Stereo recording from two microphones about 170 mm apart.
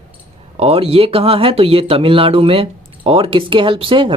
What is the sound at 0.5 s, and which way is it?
Speech, 35° right (ahead or behind).